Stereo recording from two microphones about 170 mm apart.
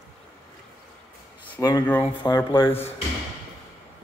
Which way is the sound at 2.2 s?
25° left (ahead or behind).